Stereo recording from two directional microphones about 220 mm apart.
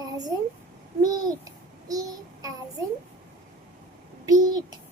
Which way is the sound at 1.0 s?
15° right (ahead or behind).